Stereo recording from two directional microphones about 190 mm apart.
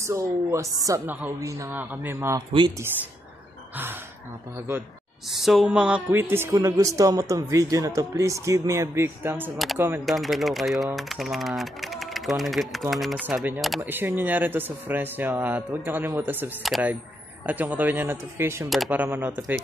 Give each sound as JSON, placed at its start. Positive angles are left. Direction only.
{"t": 0.0, "sound": "a man's voice", "side_deg": -15}
{"t": 3.7, "sound": "a man's voice", "side_deg": -10}
{"t": 5.3, "sound": "a man's voice", "side_deg": 0}
{"t": 10.0, "sound": "a man's voice", "side_deg": 0}